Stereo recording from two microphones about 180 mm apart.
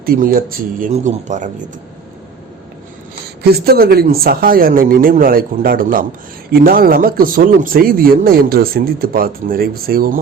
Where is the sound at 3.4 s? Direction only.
60° right (ahead or behind).